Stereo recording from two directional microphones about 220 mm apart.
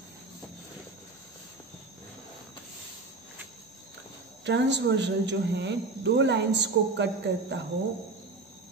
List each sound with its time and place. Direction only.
4.5 s speech: 50° right (ahead or behind)